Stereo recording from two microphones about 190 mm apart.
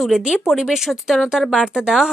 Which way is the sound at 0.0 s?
Centre (ahead or behind).